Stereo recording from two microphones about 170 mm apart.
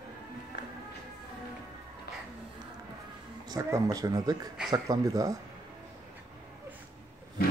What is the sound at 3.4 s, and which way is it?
Speech, 20° right (ahead or behind).